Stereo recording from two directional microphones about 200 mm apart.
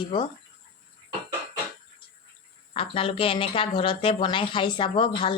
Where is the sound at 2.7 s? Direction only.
25° left (ahead or behind).